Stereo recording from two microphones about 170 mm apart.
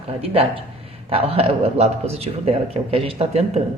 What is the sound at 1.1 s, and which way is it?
A woman's voice, 35° right (ahead or behind).